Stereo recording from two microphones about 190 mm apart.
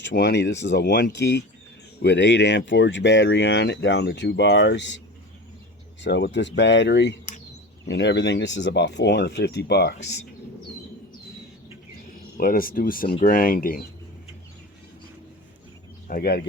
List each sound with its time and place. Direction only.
0.0 s speech: 60° left (ahead or behind)
6.0 s speech: 65° left (ahead or behind)
12.4 s speech: 50° left (ahead or behind)
16.0 s speech: 50° left (ahead or behind)